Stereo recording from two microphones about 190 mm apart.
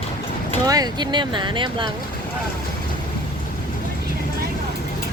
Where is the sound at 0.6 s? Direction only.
20° right (ahead or behind).